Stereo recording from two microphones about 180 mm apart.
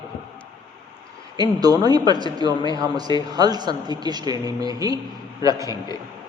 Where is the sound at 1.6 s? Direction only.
20° right (ahead or behind).